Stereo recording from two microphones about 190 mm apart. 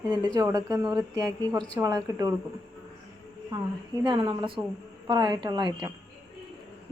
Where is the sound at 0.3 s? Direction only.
20° right (ahead or behind).